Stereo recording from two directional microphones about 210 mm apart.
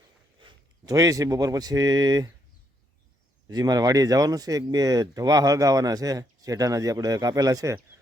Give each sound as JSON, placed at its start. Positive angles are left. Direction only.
{"t": 0.3, "sound": "speech", "side_deg": -20}
{"t": 3.5, "sound": "speech", "side_deg": -20}